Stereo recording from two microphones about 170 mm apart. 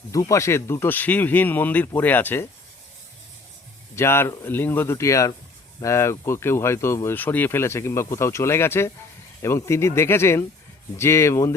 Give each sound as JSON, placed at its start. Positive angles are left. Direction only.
{"t": 0.1, "sound": "speech", "side_deg": 20}
{"t": 3.9, "sound": "speech", "side_deg": 15}